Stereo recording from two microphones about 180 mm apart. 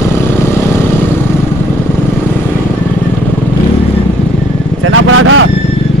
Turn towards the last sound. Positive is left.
turn(degrees=-90)